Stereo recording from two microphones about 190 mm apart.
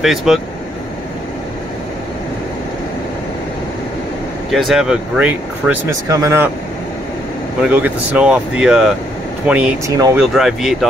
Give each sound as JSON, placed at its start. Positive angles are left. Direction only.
{"t": 0.0, "sound": "speech", "side_deg": 0}
{"t": 4.5, "sound": "speech", "side_deg": 0}
{"t": 7.6, "sound": "speech", "side_deg": -10}
{"t": 9.8, "sound": "speech", "side_deg": -20}
{"t": 10.1, "sound": "speech", "side_deg": 0}